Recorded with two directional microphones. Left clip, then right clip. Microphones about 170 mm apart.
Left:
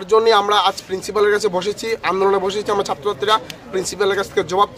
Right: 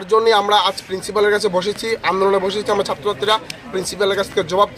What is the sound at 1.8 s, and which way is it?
Speech, 35° left (ahead or behind).